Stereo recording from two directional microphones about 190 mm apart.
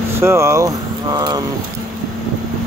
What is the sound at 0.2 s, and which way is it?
Speech, 15° right (ahead or behind).